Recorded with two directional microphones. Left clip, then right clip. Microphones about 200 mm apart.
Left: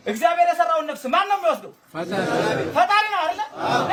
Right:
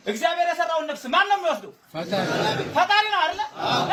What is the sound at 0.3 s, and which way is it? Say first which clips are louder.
A man's voice: left 4 dB; 25° left (ahead or behind).